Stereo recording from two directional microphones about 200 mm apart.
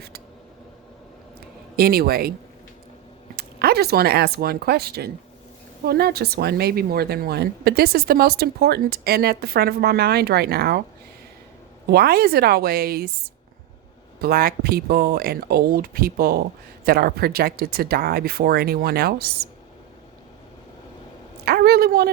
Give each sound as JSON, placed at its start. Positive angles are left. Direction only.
{"t": 1.7, "sound": "speech", "side_deg": -50}
{"t": 3.3, "sound": "speech", "side_deg": -50}
{"t": 11.9, "sound": "speech", "side_deg": -50}
{"t": 14.2, "sound": "speech", "side_deg": -50}
{"t": 21.4, "sound": "speech", "side_deg": -50}